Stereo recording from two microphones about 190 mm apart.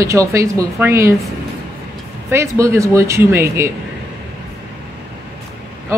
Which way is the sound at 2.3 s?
15° right (ahead or behind).